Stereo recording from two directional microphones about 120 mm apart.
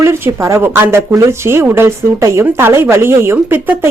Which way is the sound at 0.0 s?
25° right (ahead or behind).